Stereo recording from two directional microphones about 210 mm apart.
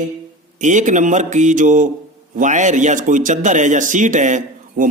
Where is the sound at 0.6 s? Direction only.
35° right (ahead or behind).